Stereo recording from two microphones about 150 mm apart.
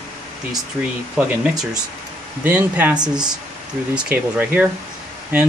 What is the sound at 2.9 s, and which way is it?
Speech, 30° right (ahead or behind).